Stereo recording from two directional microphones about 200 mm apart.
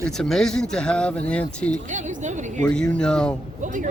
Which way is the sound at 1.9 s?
40° right (ahead or behind).